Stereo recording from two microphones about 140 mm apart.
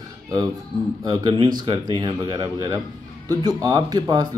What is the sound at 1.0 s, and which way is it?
Speech, 30° right (ahead or behind).